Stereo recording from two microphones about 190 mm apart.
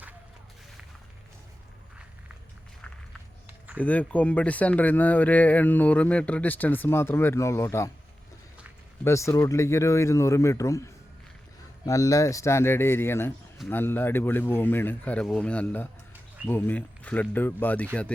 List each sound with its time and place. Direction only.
3.8 s speech: 5° left (ahead or behind)
9.0 s speech: 15° left (ahead or behind)